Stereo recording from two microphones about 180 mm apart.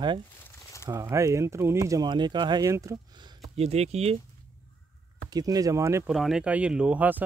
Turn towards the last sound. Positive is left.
turn(degrees=-10)  # may be behind; listen again after turning